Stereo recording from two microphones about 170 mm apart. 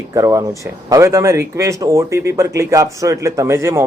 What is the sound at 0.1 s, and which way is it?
A man's voice, 20° right (ahead or behind).